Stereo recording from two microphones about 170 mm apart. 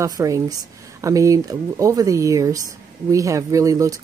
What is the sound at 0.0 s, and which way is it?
Speech, 20° right (ahead or behind).